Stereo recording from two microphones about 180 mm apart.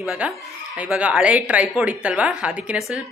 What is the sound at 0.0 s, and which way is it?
Speech, 5° right (ahead or behind).